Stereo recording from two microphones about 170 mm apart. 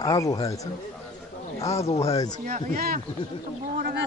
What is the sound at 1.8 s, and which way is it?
Speech, 35° left (ahead or behind).